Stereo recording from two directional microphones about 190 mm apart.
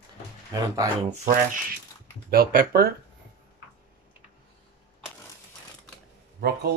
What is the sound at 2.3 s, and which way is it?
Speech, 50° right (ahead or behind).